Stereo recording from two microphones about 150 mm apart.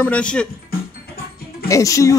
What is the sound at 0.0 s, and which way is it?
Speech, 10° left (ahead or behind).